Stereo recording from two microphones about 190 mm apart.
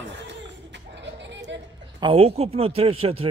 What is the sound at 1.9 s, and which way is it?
Speech, 30° right (ahead or behind).